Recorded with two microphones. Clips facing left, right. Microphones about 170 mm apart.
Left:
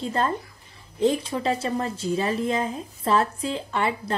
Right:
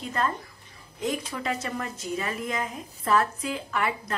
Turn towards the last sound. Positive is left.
turn(degrees=30)  # may be behind; listen again after turning